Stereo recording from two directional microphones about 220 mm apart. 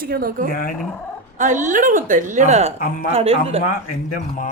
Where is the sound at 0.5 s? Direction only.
40° left (ahead or behind).